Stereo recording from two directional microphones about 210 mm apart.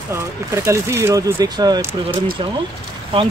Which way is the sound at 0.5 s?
15° right (ahead or behind).